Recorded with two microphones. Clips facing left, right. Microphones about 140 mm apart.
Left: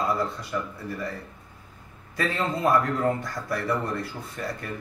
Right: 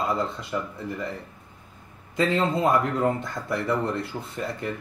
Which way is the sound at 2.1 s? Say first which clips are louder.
Right 4 dB; 20° right (ahead or behind).